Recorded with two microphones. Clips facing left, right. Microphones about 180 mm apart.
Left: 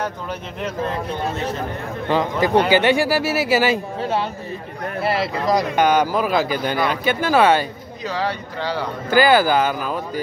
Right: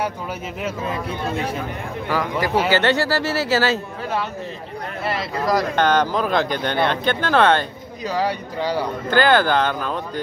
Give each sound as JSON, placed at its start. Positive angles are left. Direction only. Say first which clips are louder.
{"t": 0.6, "sound": "speech", "louder": "left 2 dB", "side_deg": -5}
{"t": 2.0, "sound": "speech", "louder": "left 4 dB", "side_deg": 25}
{"t": 2.7, "sound": "speech", "louder": "left 2 dB", "side_deg": 10}
{"t": 5.0, "sound": "speech", "louder": "left 5 dB", "side_deg": 30}
{"t": 5.5, "sound": "speech", "louder": "left 1 dB", "side_deg": 10}
{"t": 8.1, "sound": "speech", "louder": "right 2 dB", "side_deg": -15}
{"t": 9.1, "sound": "speech", "louder": "left 2 dB", "side_deg": 10}